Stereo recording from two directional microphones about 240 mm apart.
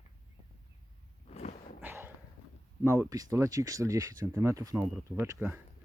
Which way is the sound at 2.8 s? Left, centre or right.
Centre.